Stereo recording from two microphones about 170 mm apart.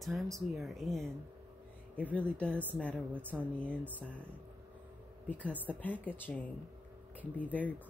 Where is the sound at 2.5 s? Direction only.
10° right (ahead or behind).